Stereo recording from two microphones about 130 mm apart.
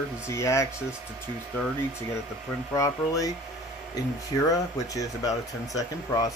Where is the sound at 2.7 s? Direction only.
25° left (ahead or behind).